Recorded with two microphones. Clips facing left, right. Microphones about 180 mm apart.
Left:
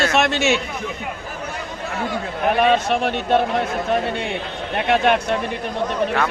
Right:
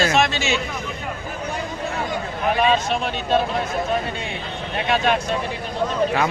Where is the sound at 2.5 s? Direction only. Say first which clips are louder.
Left 2 dB; 60° left (ahead or behind).